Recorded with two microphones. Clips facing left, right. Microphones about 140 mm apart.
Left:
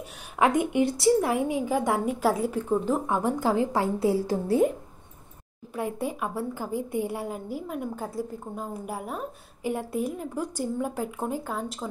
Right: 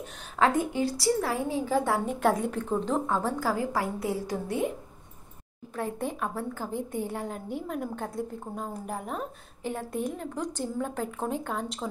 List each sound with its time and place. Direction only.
0.4 s a woman's voice: 20° left (ahead or behind)
5.8 s a woman's voice: 10° left (ahead or behind)